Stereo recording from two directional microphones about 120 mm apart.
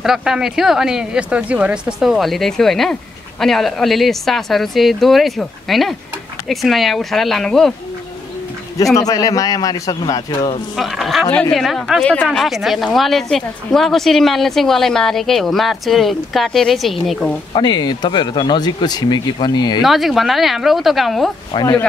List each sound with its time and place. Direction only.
0.0 s speech: 5° right (ahead or behind)
8.9 s speech: 30° left (ahead or behind)
10.8 s speech: centre (ahead or behind)
12.0 s speech: 10° left (ahead or behind)
12.3 s speech: centre (ahead or behind)
17.6 s speech: 35° left (ahead or behind)
19.8 s speech: centre (ahead or behind)
21.5 s speech: 45° left (ahead or behind)